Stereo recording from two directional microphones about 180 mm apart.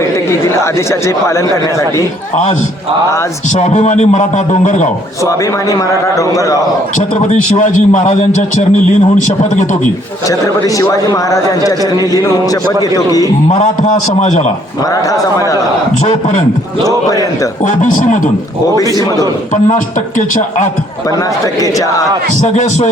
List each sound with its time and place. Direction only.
0.3 s a man's voice: 15° left (ahead or behind)
2.3 s a man's voice: 40° left (ahead or behind)
5.2 s a man's voice: 15° left (ahead or behind)
7.2 s a man's voice: 40° left (ahead or behind)
10.2 s a man's voice: 20° left (ahead or behind)
14.2 s a man's voice: 40° left (ahead or behind)
15.1 s a man's voice: 20° left (ahead or behind)
17.7 s a man's voice: 45° left (ahead or behind)
19.6 s a man's voice: 45° left (ahead or behind)
21.6 s a man's voice: 20° left (ahead or behind)
22.4 s a man's voice: 40° left (ahead or behind)